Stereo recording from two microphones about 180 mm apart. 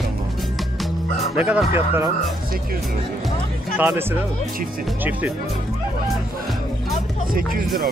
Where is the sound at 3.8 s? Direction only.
10° right (ahead or behind).